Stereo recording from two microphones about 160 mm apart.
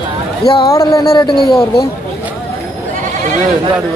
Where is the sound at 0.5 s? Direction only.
20° left (ahead or behind).